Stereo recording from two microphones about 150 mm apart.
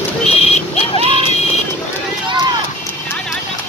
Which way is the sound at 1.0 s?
40° right (ahead or behind).